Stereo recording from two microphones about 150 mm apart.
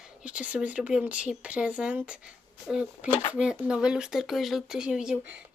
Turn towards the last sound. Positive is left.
turn(degrees=-5)  # may be behind; listen again after turning